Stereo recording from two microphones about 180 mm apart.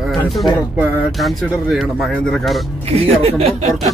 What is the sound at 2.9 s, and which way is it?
Speech, 35° right (ahead or behind).